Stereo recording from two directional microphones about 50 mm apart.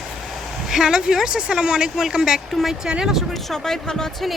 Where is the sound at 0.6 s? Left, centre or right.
Centre.